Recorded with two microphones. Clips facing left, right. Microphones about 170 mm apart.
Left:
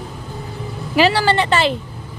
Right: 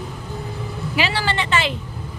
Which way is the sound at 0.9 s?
40° left (ahead or behind).